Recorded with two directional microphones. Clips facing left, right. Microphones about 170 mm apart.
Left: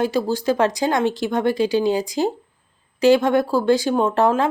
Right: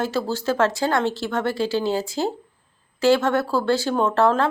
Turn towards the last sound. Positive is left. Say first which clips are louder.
# left 1 dB
turn(degrees=15)  # may be behind; listen again after turning